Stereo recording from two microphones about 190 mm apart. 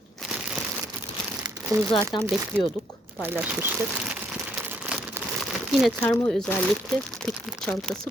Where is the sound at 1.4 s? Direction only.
20° right (ahead or behind).